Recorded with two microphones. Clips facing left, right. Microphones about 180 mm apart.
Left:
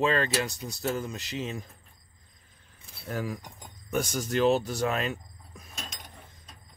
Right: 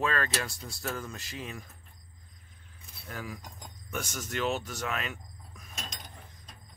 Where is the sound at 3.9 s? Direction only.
35° left (ahead or behind).